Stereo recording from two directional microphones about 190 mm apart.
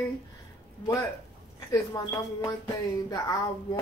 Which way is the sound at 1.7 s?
20° left (ahead or behind).